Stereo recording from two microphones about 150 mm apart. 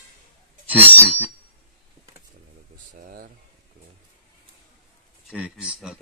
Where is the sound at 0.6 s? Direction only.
10° right (ahead or behind).